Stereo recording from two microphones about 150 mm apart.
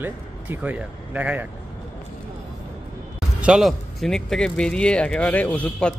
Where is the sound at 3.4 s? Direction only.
5° right (ahead or behind).